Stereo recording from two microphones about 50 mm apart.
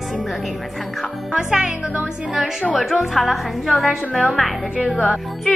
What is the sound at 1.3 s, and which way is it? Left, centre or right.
Speech, centre.